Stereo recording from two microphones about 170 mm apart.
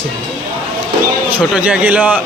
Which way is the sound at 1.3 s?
10° right (ahead or behind).